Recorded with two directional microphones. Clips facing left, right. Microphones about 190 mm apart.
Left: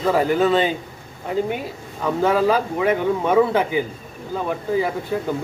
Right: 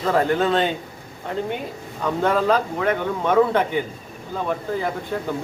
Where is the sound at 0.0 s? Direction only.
5° left (ahead or behind).